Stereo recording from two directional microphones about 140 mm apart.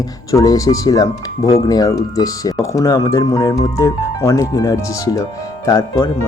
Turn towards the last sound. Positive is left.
turn(degrees=25)  # may be behind; listen again after turning